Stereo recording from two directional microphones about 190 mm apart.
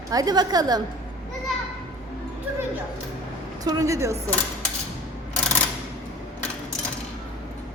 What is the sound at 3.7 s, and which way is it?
Speech, 15° right (ahead or behind).